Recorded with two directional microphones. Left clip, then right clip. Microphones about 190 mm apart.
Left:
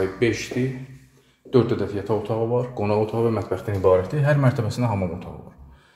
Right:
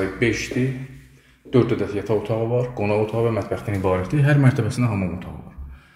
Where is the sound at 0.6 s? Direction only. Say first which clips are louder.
Right 2 dB; 10° left (ahead or behind).